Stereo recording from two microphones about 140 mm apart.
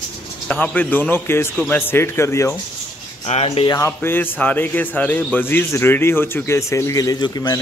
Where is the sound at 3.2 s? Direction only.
50° left (ahead or behind).